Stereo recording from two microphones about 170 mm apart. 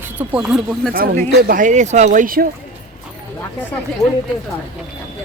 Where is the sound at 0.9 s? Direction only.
60° right (ahead or behind).